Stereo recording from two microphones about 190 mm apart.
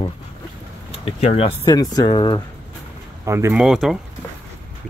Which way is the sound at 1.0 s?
35° left (ahead or behind).